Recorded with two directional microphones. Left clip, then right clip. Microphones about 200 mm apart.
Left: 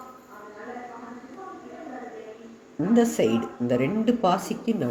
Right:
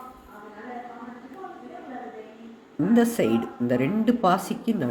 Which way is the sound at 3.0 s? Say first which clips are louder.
Even; 10° right (ahead or behind).